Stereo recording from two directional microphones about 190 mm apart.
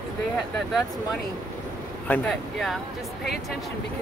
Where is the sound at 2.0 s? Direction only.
5° left (ahead or behind).